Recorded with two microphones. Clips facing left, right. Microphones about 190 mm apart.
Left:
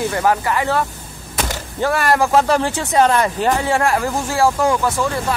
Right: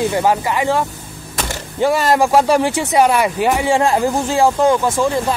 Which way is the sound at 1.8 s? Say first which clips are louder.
Right 3 dB; 15° right (ahead or behind).